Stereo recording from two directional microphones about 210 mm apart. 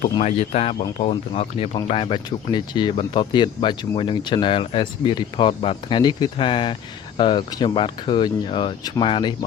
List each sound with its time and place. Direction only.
0.1 s speech: 30° left (ahead or behind)